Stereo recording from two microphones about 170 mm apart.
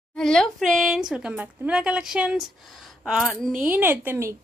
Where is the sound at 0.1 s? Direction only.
5° left (ahead or behind).